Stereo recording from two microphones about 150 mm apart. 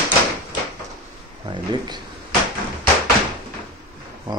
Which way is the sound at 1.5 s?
30° right (ahead or behind).